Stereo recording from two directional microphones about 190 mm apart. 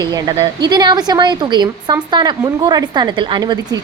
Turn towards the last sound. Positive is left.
turn(degrees=-25)  # may be behind; listen again after turning